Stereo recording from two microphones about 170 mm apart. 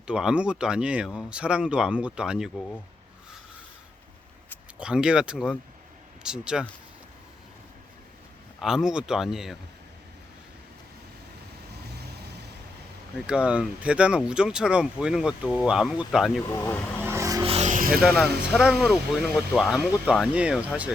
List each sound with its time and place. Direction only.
0.1 s speech: 5° right (ahead or behind)
4.8 s speech: 5° right (ahead or behind)
8.6 s speech: 5° right (ahead or behind)
11.8 s vehicle: 70° right (ahead or behind)
13.2 s speech: 5° right (ahead or behind)
16.5 s speech: 15° left (ahead or behind)
17.0 s vehicle: 15° right (ahead or behind)
17.4 s music: 40° right (ahead or behind); by 18.0 s 55° right (ahead or behind)
18.0 s speech: 5° right (ahead or behind)